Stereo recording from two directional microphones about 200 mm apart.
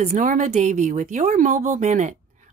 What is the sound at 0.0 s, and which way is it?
Speech, 35° right (ahead or behind).